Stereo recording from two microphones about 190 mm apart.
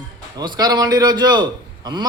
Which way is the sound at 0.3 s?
20° right (ahead or behind).